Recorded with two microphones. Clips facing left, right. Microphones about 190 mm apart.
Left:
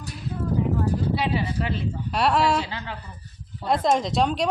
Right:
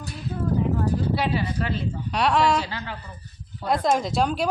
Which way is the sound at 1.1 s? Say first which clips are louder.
Even; 20° left (ahead or behind).